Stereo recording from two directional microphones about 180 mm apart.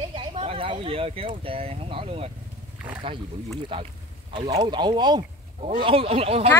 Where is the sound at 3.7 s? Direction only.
30° right (ahead or behind).